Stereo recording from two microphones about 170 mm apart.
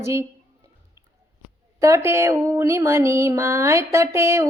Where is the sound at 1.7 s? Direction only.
15° right (ahead or behind).